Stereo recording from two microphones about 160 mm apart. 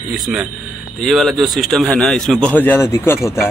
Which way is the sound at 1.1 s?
Centre (ahead or behind).